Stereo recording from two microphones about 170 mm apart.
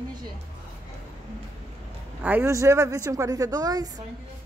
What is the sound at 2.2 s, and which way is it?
Speech, 10° right (ahead or behind).